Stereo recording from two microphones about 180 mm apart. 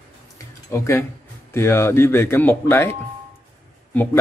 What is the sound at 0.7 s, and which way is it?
Speech, 15° left (ahead or behind).